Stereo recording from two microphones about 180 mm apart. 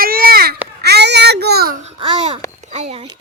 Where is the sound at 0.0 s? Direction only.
55° right (ahead or behind).